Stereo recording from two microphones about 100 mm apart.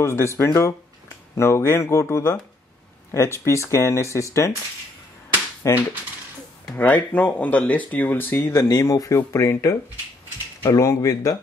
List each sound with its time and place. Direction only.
0.0 s speech: 30° left (ahead or behind)
5.6 s speech: 30° left (ahead or behind)
6.8 s speech: 15° left (ahead or behind); by 11.3 s 35° left (ahead or behind)